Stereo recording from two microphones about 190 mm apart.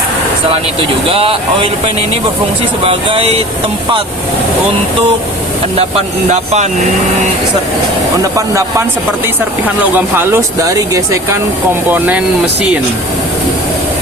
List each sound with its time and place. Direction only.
1.0 s speech: 30° right (ahead or behind)
2.8 s speech: 30° right (ahead or behind)
6.3 s speech: 35° right (ahead or behind)
9.9 s speech: 10° right (ahead or behind)